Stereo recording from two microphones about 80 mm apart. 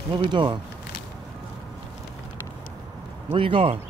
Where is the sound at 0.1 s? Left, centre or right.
Right.